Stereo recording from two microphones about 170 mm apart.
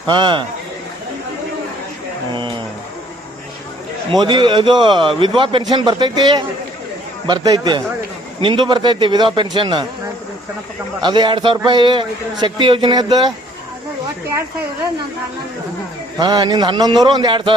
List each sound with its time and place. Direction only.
0.1 s a man's voice: 25° right (ahead or behind)
4.1 s a man's voice: 25° right (ahead or behind)
11.0 s a man's voice: 25° right (ahead or behind)
16.2 s a man's voice: 25° right (ahead or behind)